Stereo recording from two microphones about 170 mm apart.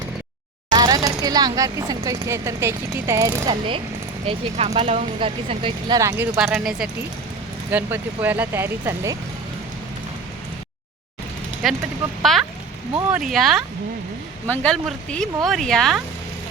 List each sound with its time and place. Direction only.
0.8 s speech: 20° right (ahead or behind)
4.3 s speech: 35° right (ahead or behind)
6.0 s speech: 15° right (ahead or behind)
6.3 s speech: 5° right (ahead or behind)
11.6 s speech: centre (ahead or behind)